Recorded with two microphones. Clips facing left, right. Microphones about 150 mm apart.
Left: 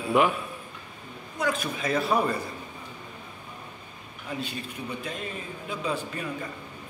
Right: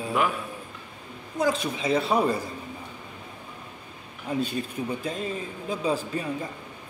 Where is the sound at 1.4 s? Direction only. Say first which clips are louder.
Right 3 dB; 25° right (ahead or behind).